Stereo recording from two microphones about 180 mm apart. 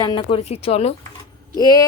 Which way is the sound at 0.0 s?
25° left (ahead or behind).